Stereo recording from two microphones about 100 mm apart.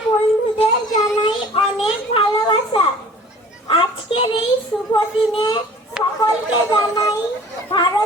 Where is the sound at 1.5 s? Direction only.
70° left (ahead or behind).